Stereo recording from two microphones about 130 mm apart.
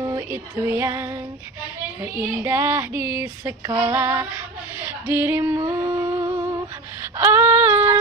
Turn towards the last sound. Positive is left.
turn(degrees=-15)  # may be behind; listen again after turning